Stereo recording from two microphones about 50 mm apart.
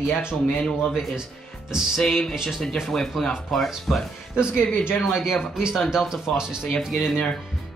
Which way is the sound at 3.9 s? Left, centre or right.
Centre.